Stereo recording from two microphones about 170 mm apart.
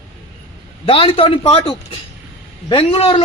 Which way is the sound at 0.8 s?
35° left (ahead or behind).